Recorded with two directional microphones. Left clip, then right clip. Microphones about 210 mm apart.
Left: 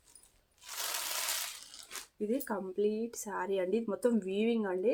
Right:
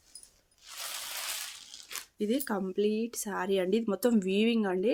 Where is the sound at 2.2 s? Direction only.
50° right (ahead or behind).